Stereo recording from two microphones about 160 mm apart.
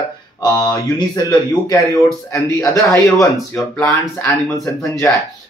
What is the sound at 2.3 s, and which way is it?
Speech, 20° left (ahead or behind).